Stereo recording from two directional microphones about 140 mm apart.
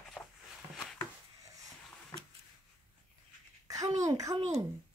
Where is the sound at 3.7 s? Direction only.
25° right (ahead or behind).